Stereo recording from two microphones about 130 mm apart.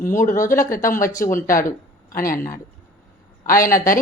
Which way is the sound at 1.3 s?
90° left.